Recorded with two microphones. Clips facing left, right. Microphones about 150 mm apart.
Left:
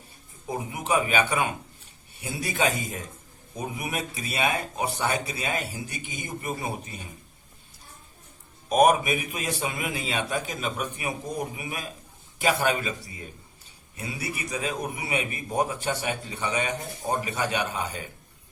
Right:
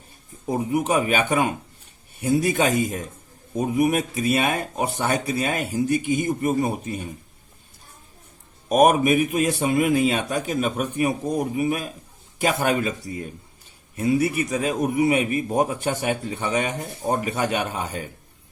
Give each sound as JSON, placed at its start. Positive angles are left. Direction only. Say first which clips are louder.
{"t": 0.5, "sound": "a man's voice", "louder": "right 5 dB", "side_deg": -45}
{"t": 8.7, "sound": "a man's voice", "louder": "right 4 dB", "side_deg": -45}